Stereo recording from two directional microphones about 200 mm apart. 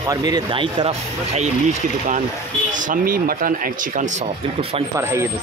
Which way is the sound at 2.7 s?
40° right (ahead or behind).